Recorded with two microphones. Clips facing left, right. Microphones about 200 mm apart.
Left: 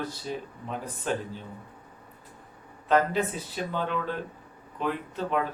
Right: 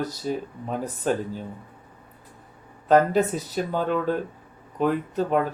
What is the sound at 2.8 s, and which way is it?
Speech, 40° right (ahead or behind).